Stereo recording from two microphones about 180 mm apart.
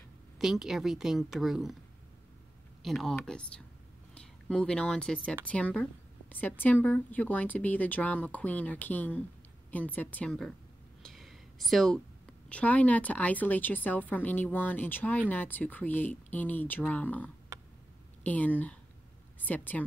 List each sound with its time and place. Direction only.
0.4 s a woman's voice: centre (ahead or behind)
2.8 s a woman's voice: centre (ahead or behind)
11.0 s a sound: centre (ahead or behind)
12.4 s a woman's voice: 10° left (ahead or behind)
17.5 s a sound: 15° right (ahead or behind)
18.2 s a woman's voice: 10° left (ahead or behind)